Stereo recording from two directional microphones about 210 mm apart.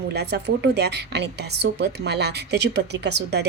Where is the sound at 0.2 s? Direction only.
55° right (ahead or behind).